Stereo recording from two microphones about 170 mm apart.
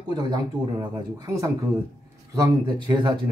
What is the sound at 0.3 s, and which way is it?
A man's voice, 20° right (ahead or behind).